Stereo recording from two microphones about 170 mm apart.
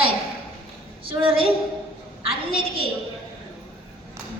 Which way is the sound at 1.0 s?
30° right (ahead or behind).